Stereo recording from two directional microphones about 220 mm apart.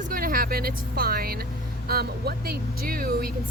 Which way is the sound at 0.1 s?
40° right (ahead or behind).